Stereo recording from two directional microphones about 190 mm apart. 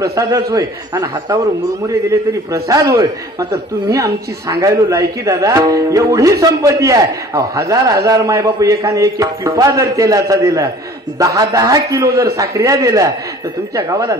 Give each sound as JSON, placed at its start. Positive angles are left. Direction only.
{"t": 0.1, "sound": "a man's voice", "side_deg": -15}
{"t": 2.5, "sound": "a man's voice", "side_deg": -15}